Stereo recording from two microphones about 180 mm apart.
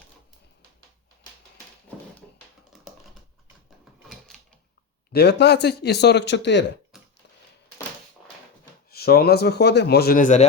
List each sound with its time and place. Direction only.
5.1 s speech: 65° left (ahead or behind)
6.9 s a sound: centre (ahead or behind)
8.9 s a man's voice: 60° left (ahead or behind)